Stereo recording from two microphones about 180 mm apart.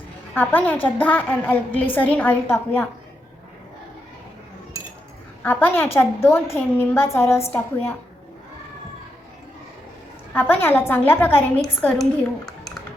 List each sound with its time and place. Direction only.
0.3 s a woman's voice: 10° left (ahead or behind)
5.4 s a woman's voice: 10° left (ahead or behind)
10.3 s a woman's voice: 10° left (ahead or behind)